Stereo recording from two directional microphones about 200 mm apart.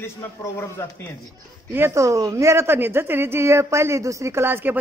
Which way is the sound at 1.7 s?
10° right (ahead or behind).